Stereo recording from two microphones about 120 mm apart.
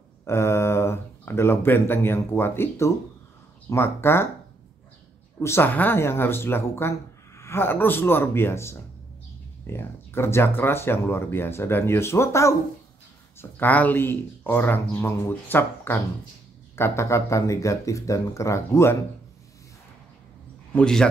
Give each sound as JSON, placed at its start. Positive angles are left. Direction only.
{"t": 0.3, "sound": "speech", "side_deg": 20}
{"t": 5.4, "sound": "speech", "side_deg": 20}
{"t": 20.7, "sound": "speech", "side_deg": 5}